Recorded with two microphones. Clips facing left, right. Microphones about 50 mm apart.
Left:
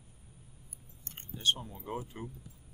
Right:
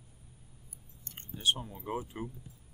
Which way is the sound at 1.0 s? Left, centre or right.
Left.